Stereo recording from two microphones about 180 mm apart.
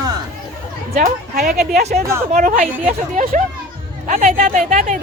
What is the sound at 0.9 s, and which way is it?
Music, 55° right (ahead or behind).